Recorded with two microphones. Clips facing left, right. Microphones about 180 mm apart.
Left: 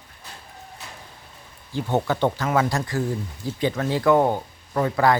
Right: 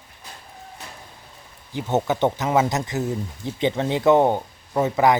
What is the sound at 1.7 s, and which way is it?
Speech, 20° right (ahead or behind).